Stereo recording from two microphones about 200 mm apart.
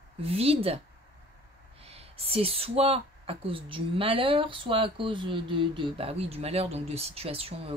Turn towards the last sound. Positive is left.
turn(degrees=-30)  # may be behind; listen again after turning